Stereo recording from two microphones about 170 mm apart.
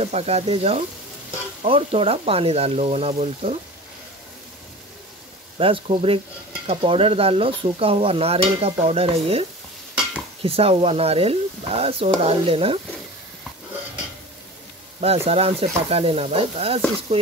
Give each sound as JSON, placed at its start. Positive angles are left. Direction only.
{"t": 0.0, "sound": "stir", "side_deg": -35}
{"t": 5.6, "sound": "stir", "side_deg": -30}
{"t": 15.0, "sound": "stir", "side_deg": -35}